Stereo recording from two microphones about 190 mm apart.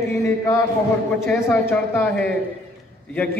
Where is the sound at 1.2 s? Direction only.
10° left (ahead or behind).